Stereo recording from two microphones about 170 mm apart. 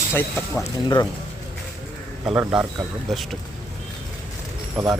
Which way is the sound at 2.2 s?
5° right (ahead or behind).